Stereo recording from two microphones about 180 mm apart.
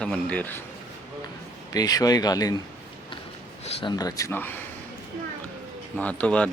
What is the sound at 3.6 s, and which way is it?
Speech, 25° left (ahead or behind).